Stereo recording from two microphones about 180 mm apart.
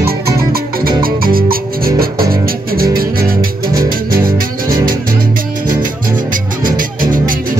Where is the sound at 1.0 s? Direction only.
55° right (ahead or behind).